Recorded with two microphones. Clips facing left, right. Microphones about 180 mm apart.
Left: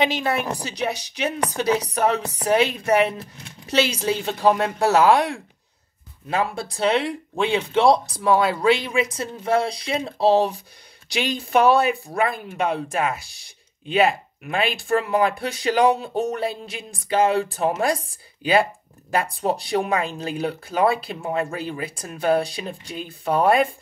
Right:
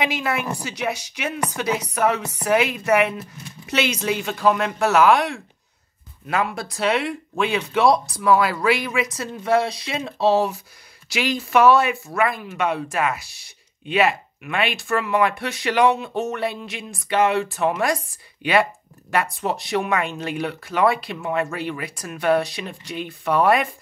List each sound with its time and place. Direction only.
0.0 s speech: 30° left (ahead or behind)